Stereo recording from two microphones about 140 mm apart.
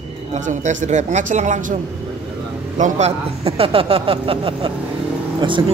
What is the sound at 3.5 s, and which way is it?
Speech, 40° right (ahead or behind).